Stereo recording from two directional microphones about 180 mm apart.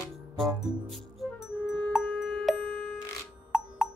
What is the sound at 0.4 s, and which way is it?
Music, centre (ahead or behind).